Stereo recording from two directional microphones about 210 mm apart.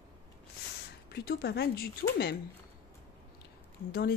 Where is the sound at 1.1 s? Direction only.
50° left (ahead or behind).